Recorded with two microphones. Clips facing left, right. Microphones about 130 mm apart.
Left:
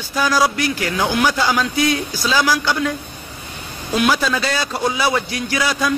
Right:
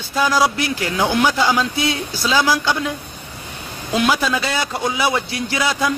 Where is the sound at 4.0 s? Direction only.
20° right (ahead or behind).